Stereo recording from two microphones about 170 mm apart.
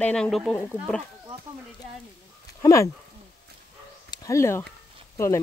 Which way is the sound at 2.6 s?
20° left (ahead or behind).